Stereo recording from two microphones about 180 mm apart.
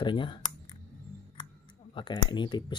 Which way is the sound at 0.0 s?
25° left (ahead or behind).